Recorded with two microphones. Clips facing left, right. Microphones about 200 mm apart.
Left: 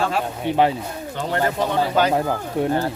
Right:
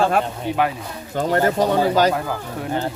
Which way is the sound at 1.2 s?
45° right (ahead or behind).